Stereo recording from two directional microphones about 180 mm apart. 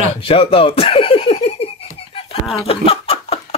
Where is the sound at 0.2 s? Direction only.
30° left (ahead or behind).